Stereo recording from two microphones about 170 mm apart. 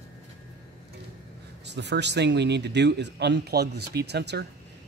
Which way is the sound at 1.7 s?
90° right.